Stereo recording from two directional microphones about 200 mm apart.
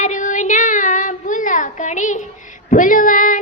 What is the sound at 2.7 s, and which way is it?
Speech, 40° left (ahead or behind).